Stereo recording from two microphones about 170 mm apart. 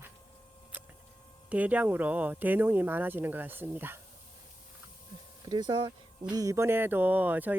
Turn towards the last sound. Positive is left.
turn(degrees=-10)  # may be behind; listen again after turning